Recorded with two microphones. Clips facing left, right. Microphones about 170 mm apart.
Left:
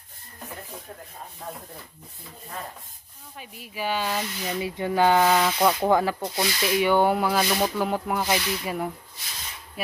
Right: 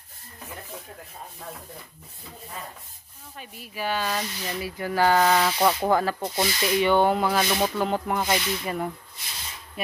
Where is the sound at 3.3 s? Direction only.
10° left (ahead or behind).